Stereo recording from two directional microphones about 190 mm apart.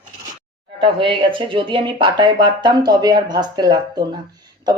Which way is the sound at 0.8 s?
25° right (ahead or behind).